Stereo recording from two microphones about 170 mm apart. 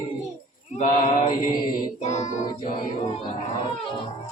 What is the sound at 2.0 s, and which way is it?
Child singing, 45° left (ahead or behind).